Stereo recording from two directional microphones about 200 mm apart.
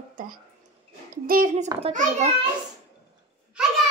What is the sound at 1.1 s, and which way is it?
A child's voice, 45° right (ahead or behind).